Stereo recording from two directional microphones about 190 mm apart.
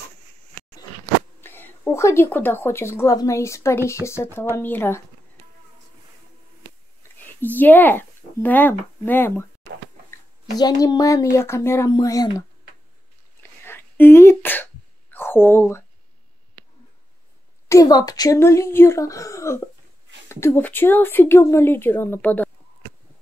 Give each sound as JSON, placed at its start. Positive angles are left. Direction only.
{"t": 1.4, "sound": "a woman's voice", "side_deg": 10}
{"t": 7.5, "sound": "a woman's voice", "side_deg": 10}
{"t": 10.6, "sound": "a woman's voice", "side_deg": 20}
{"t": 13.4, "sound": "throat clearing", "side_deg": 10}
{"t": 17.6, "sound": "a woman's voice", "side_deg": 20}